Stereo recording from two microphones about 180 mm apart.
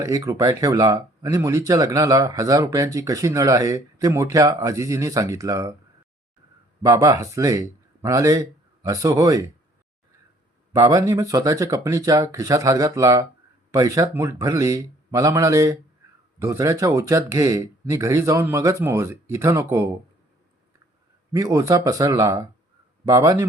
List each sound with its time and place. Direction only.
0.0 s speech: 20° right (ahead or behind)
6.8 s speech: 20° right (ahead or behind)
10.7 s speech: 15° right (ahead or behind)
21.3 s speech: 20° right (ahead or behind)